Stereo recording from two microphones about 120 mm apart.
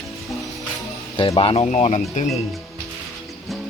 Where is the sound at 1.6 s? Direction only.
80° left.